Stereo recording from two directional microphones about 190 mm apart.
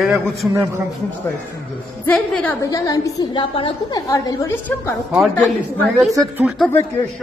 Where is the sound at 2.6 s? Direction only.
20° left (ahead or behind).